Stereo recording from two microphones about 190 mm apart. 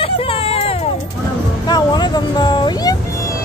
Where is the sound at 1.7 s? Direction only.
20° left (ahead or behind).